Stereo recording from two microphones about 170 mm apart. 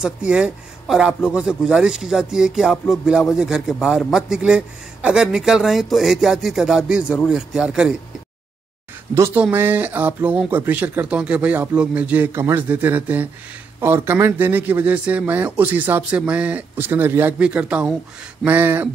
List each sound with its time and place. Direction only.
0.0 s speech: 5° right (ahead or behind)
9.1 s speech: 15° right (ahead or behind)